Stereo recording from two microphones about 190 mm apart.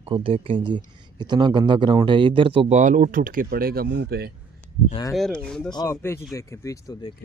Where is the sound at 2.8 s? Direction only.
45° right (ahead or behind); by 4.3 s 60° right (ahead or behind).